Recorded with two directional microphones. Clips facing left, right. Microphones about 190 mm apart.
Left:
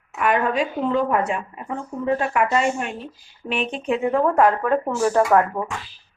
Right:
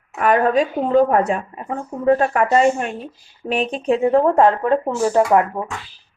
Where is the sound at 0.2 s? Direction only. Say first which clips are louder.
Right 5 dB; 40° right (ahead or behind); by 5.5 s 20° right (ahead or behind).